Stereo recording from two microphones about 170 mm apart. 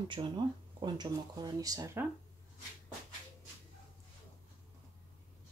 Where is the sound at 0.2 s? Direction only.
25° right (ahead or behind).